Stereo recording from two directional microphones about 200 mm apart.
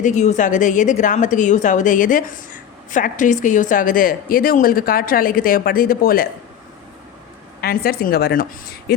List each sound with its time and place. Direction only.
0.0 s a woman's voice: 35° left (ahead or behind)
7.6 s a woman's voice: 50° left (ahead or behind)